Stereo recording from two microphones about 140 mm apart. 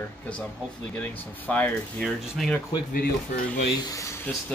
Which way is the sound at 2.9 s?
90° left.